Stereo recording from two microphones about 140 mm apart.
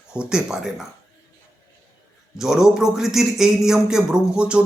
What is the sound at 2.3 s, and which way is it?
A man's voice, 5° right (ahead or behind).